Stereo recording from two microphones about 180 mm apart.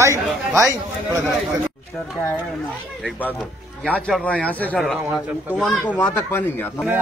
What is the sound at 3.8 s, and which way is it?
Speech, 10° right (ahead or behind).